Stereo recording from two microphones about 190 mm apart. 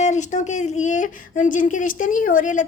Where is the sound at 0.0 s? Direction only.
40° left (ahead or behind).